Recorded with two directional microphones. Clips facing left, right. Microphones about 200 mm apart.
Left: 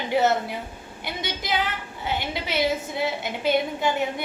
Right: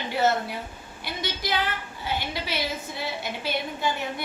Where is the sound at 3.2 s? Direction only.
20° left (ahead or behind).